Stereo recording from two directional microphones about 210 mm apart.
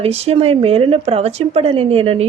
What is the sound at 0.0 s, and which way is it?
Speech, 30° right (ahead or behind).